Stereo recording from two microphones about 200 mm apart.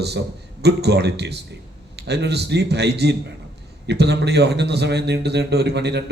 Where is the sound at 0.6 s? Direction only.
55° right (ahead or behind).